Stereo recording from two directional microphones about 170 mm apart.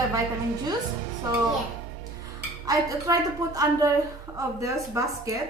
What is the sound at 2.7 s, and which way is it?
A woman's voice, 20° right (ahead or behind).